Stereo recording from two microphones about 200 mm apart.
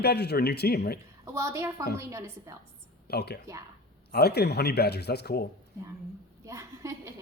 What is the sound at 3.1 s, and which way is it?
Speech, 55° left (ahead or behind).